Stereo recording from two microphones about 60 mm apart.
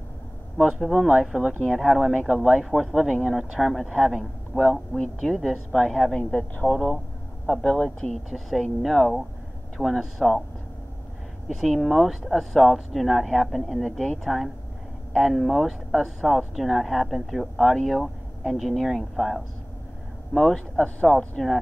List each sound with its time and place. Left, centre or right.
0.9 s speech: centre
4.5 s speech: left
4.9 s speech: centre
5.3 s speech: centre
6.3 s speech: left
8.3 s speech: centre
11.4 s speech: centre